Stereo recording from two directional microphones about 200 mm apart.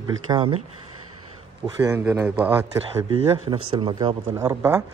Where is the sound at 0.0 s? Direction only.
20° right (ahead or behind).